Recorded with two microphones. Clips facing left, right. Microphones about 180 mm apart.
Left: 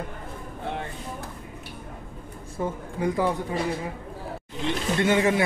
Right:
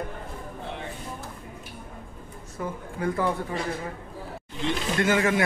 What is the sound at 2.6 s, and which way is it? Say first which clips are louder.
Speech: left 4 dB; 25° left (ahead or behind).